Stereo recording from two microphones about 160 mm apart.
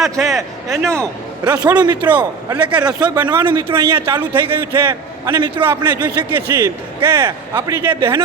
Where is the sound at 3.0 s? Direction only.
25° right (ahead or behind).